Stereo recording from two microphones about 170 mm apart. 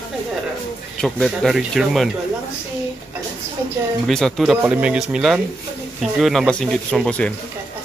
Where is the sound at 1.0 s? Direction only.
Centre (ahead or behind).